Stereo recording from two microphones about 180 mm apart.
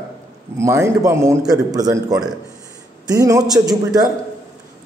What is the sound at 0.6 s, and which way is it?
Speech, 15° right (ahead or behind).